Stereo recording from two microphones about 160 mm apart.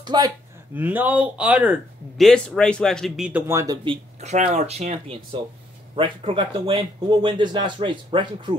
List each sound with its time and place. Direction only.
0.0 s speech: 25° right (ahead or behind)
0.7 s speech: 10° right (ahead or behind)
3.3 s speech: 15° right (ahead or behind)
3.8 s speech: 40° right (ahead or behind)